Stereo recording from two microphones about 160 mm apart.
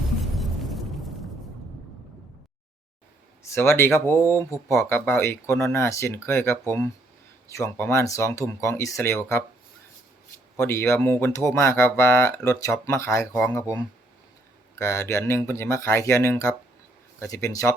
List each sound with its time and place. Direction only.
0.2 s a sound: centre (ahead or behind)
3.4 s speech: 15° left (ahead or behind)
10.6 s speech: 15° left (ahead or behind)